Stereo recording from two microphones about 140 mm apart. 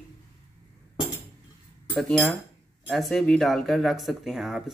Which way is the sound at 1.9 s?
5° left (ahead or behind).